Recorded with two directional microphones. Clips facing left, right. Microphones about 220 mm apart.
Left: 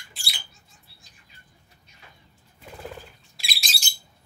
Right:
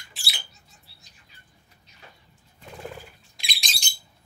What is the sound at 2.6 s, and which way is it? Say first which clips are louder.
Bird: even; centre (ahead or behind).